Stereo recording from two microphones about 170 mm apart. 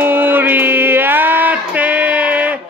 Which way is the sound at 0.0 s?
10° right (ahead or behind).